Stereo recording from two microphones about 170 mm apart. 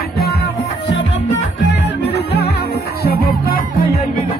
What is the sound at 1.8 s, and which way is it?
Music, 80° left.